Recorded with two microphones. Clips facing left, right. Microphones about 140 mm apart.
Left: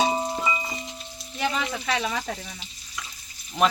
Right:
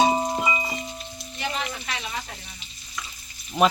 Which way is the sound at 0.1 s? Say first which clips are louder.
Right 2 dB; 15° right (ahead or behind).